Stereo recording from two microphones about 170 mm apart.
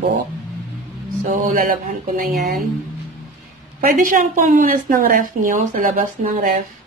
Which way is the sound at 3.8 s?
55° right (ahead or behind).